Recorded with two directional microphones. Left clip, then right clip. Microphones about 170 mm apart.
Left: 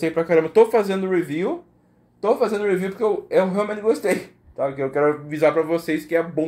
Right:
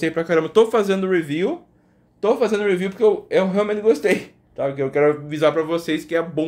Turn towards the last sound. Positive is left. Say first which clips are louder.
# even
turn(degrees=-5)  # may be behind; listen again after turning